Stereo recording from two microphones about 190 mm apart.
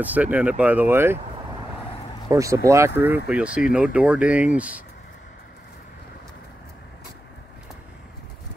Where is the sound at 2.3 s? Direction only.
15° right (ahead or behind).